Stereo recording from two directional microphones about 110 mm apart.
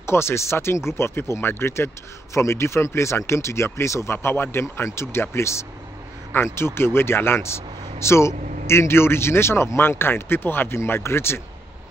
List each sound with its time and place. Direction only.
0.0 s speech: 25° left (ahead or behind)